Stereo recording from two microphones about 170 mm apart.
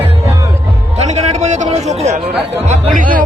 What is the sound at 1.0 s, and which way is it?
A man's voice, 40° right (ahead or behind).